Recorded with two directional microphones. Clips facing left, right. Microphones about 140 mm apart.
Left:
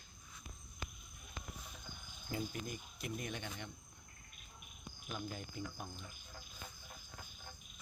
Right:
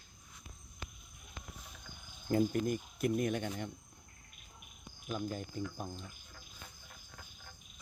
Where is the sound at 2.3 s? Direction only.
50° right (ahead or behind).